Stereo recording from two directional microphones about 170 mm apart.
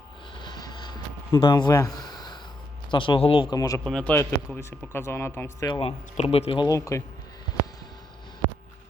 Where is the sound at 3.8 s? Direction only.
5° left (ahead or behind).